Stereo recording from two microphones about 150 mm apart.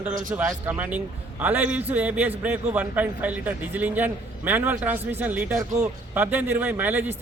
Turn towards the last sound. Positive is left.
turn(degrees=-10)  # may be behind; listen again after turning